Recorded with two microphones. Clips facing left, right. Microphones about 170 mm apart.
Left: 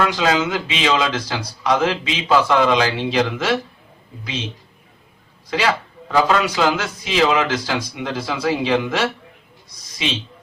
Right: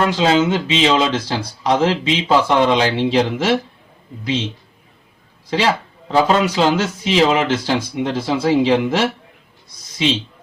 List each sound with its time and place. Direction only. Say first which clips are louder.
0.0 s speech: right 3 dB; 25° right (ahead or behind)
5.5 s speech: right 2 dB; 30° right (ahead or behind)